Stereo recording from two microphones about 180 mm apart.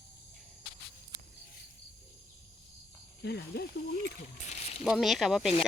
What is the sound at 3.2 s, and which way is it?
Speech, 65° left (ahead or behind).